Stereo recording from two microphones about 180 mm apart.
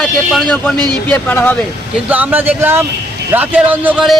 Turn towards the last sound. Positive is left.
turn(degrees=-5)  # may be behind; listen again after turning